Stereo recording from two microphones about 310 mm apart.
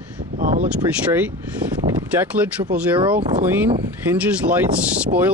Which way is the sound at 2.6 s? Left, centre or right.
Centre.